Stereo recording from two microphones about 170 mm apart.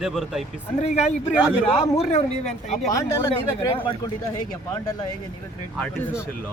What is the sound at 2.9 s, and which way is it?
Speech, 20° left (ahead or behind).